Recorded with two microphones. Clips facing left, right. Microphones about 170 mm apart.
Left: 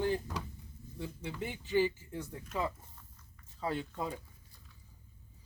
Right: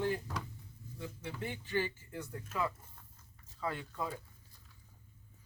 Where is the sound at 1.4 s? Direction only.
15° left (ahead or behind).